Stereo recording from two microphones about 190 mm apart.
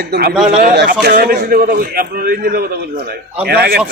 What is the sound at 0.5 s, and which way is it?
A man's voice, 45° right (ahead or behind).